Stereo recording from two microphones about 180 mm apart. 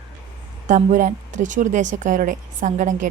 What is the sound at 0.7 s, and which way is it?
A woman's voice, 45° right (ahead or behind).